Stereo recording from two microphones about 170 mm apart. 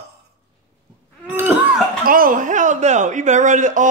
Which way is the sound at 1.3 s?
10° right (ahead or behind).